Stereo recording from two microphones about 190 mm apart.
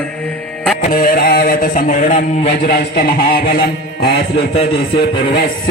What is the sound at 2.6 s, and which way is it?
A man's voice, 55° left (ahead or behind).